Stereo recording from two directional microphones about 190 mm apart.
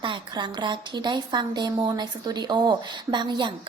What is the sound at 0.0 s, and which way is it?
A woman's voice, 25° right (ahead or behind).